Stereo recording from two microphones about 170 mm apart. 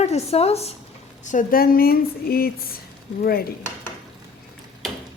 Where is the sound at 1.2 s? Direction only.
55° left (ahead or behind).